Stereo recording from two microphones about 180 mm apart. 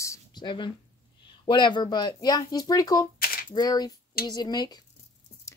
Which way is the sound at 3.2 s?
55° left (ahead or behind).